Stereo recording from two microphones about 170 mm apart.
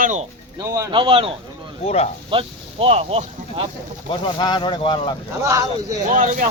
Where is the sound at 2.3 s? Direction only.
35° right (ahead or behind).